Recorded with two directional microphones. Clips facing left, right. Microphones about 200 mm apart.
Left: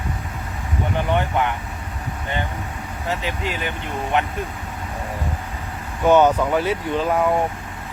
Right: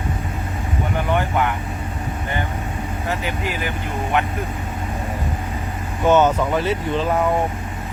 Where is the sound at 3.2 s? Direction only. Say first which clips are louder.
Right 1 dB; 25° left (ahead or behind).